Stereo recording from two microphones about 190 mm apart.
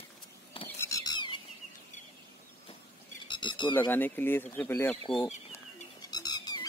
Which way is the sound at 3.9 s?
10° left (ahead or behind).